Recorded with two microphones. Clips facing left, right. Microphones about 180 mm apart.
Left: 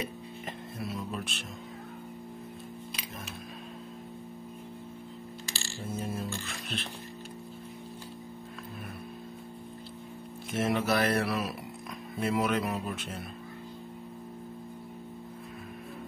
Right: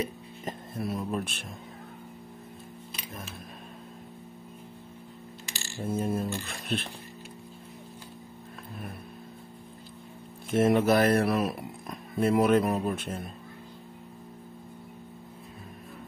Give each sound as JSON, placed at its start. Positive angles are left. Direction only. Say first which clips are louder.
{"t": 0.0, "sound": "music", "louder": "right 4 dB", "side_deg": -50}
{"t": 5.8, "sound": "music", "louder": "right 6 dB", "side_deg": -55}
{"t": 10.5, "sound": "speech", "louder": "right 6 dB", "side_deg": -55}